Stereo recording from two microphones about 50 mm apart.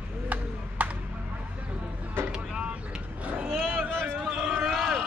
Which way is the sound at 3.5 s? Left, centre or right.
Centre.